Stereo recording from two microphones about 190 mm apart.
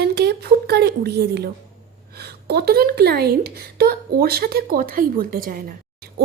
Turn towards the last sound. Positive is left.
turn(degrees=-50)  # may be behind; listen again after turning